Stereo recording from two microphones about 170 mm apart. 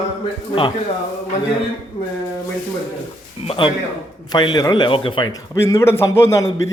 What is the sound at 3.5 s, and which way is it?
Speech, 30° left (ahead or behind).